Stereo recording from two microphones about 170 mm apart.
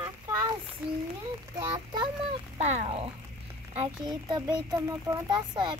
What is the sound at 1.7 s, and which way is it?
Speech, 25° right (ahead or behind).